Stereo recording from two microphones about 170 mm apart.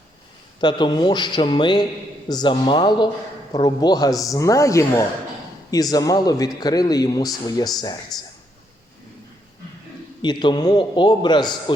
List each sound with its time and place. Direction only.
0.6 s speech: 25° left (ahead or behind)
10.2 s speech: 25° left (ahead or behind)